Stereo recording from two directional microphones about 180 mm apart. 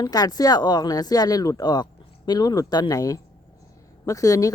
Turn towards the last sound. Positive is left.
turn(degrees=20)  # may be behind; listen again after turning